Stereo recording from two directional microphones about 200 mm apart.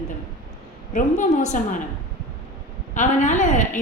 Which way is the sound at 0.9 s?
40° left (ahead or behind).